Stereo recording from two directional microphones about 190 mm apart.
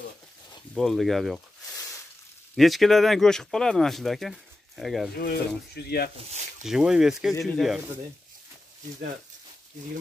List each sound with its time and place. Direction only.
0.7 s speech: centre (ahead or behind)
2.5 s speech: centre (ahead or behind)
5.1 s speech: 50° left (ahead or behind)
6.6 s speech: 5° right (ahead or behind)